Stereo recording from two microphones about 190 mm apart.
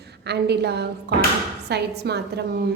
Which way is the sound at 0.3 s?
60° right (ahead or behind).